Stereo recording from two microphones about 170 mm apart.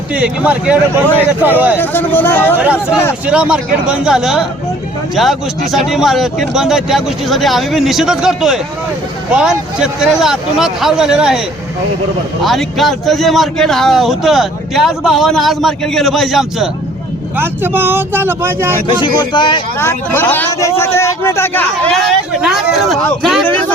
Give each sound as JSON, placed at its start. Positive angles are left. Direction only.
{"t": 0.1, "sound": "speech", "side_deg": -5}
{"t": 1.8, "sound": "speech", "side_deg": 10}
{"t": 2.6, "sound": "a man's voice", "side_deg": -10}
{"t": 12.4, "sound": "a man's voice", "side_deg": 0}
{"t": 17.3, "sound": "speech", "side_deg": -10}
{"t": 19.0, "sound": "speech", "side_deg": 25}
{"t": 19.8, "sound": "a man's voice", "side_deg": 10}